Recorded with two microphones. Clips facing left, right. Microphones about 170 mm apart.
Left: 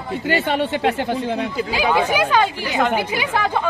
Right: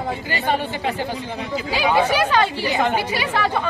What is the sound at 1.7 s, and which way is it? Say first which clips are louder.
Speech: right 2 dB; 15° left (ahead or behind).